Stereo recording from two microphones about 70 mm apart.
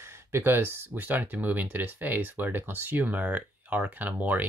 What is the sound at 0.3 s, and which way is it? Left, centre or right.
Speech, right.